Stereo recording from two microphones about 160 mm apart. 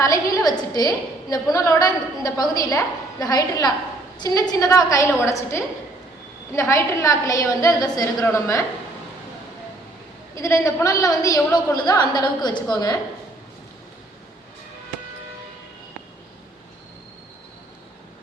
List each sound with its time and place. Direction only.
0.0 s a woman's voice: 20° left (ahead or behind)
10.3 s a woman's voice: 20° left (ahead or behind)